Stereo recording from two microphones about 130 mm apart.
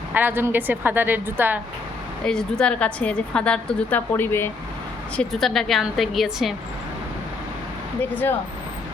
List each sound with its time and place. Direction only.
0.1 s a woman's voice: 15° right (ahead or behind)
2.2 s a woman's voice: 5° left (ahead or behind)
5.1 s a woman's voice: 5° left (ahead or behind)
8.1 s a woman's voice: 15° left (ahead or behind)